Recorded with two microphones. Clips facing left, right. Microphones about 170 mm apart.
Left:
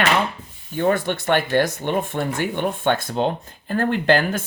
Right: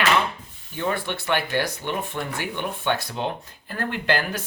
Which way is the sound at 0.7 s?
45° left (ahead or behind).